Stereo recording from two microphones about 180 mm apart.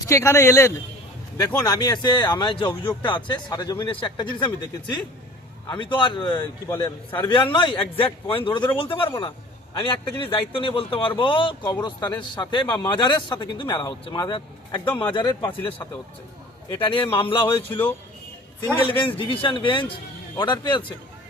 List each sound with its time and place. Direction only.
0.1 s a man's voice: 15° left (ahead or behind)
16.6 s speech: 30° left (ahead or behind)
18.9 s speech: 30° left (ahead or behind)